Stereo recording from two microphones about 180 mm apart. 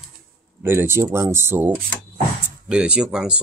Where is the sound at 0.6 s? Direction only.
15° right (ahead or behind).